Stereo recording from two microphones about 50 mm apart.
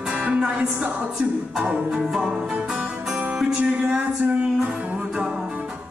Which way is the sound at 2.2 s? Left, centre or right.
Right.